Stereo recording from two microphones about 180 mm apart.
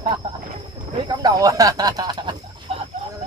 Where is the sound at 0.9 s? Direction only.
25° right (ahead or behind).